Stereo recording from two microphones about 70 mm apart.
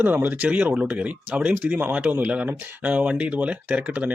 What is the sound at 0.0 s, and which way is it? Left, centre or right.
Speech, right.